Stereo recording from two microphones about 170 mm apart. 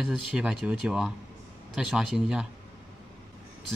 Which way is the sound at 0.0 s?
5° right (ahead or behind).